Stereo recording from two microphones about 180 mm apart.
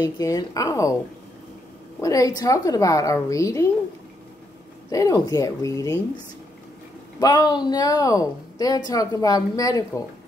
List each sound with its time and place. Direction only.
0.0 s a woman's voice: 20° left (ahead or behind)
2.0 s a woman's voice: 20° left (ahead or behind)
4.9 s a woman's voice: 20° left (ahead or behind)
7.2 s a woman's voice: 25° left (ahead or behind)